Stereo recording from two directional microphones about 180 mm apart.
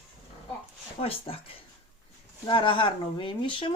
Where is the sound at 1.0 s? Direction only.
30° left (ahead or behind).